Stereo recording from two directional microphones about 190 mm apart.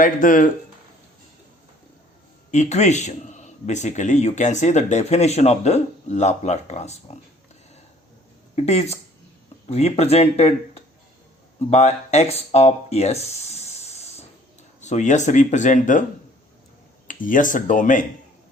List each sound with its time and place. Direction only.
0.0 s speech: 45° left (ahead or behind)
2.5 s a man's voice: 35° left (ahead or behind)
8.5 s a man's voice: 35° left (ahead or behind)
17.1 s speech: 45° left (ahead or behind)